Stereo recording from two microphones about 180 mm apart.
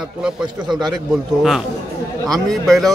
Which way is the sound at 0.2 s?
5° right (ahead or behind).